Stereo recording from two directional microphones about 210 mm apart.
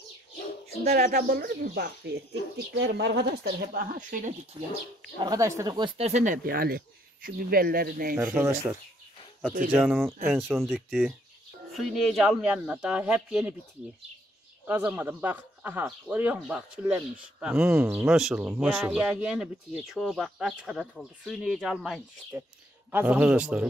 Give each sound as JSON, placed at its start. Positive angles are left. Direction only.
{"t": 0.8, "sound": "speech", "side_deg": -45}
{"t": 2.7, "sound": "speech", "side_deg": -60}
{"t": 5.2, "sound": "speech", "side_deg": -15}
{"t": 8.3, "sound": "speech", "side_deg": -10}
{"t": 9.7, "sound": "speech", "side_deg": -10}
{"t": 14.7, "sound": "speech", "side_deg": -10}